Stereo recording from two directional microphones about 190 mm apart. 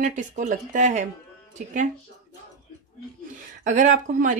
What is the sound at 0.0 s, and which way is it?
A woman's voice, 40° right (ahead or behind).